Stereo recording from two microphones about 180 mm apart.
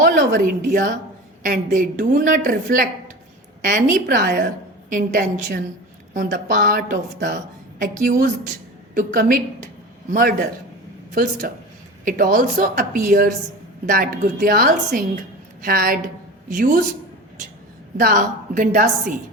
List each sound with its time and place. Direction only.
0.0 s a woman's voice: 50° right (ahead or behind)
7.8 s a woman's voice: 50° right (ahead or behind)
10.1 s a woman's voice: 55° right (ahead or behind)
17.9 s a woman's voice: 50° right (ahead or behind)